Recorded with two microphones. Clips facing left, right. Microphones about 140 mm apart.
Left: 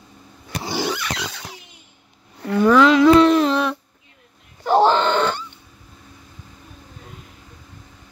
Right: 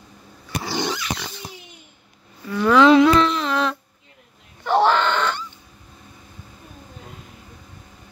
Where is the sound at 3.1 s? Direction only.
40° left (ahead or behind).